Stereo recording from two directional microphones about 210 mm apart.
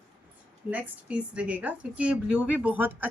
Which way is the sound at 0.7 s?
5° right (ahead or behind).